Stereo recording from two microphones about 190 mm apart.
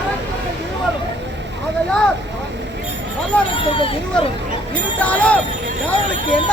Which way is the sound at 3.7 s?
30° left (ahead or behind).